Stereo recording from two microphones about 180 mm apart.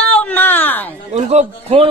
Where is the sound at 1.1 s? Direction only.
35° right (ahead or behind).